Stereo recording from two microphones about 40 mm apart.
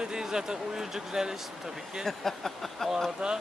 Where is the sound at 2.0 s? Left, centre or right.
Centre.